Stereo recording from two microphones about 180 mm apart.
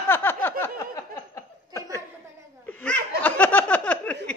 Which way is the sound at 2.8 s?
10° left (ahead or behind).